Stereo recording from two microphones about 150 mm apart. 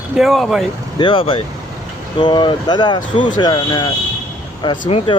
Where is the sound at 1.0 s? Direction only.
35° left (ahead or behind).